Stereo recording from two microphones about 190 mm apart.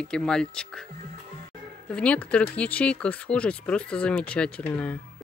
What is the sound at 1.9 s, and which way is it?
Speech, 5° left (ahead or behind).